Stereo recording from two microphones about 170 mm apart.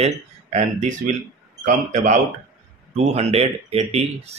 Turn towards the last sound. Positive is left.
turn(degrees=-35)  # may be behind; listen again after turning